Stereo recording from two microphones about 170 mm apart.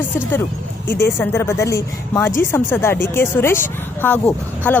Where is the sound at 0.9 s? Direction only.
15° left (ahead or behind).